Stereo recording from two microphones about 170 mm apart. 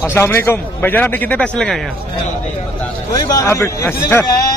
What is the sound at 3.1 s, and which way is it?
A man's voice, 20° left (ahead or behind).